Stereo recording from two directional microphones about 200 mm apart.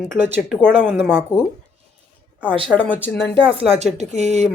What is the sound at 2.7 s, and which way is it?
Speech, 10° left (ahead or behind).